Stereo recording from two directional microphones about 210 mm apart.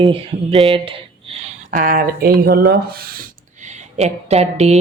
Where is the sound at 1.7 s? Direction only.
40° right (ahead or behind).